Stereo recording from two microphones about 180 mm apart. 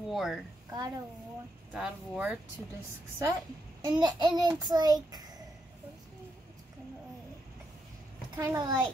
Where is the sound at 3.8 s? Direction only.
25° right (ahead or behind).